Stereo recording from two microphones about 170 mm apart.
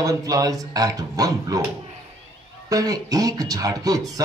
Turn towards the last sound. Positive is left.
turn(degrees=-20)  # may be behind; listen again after turning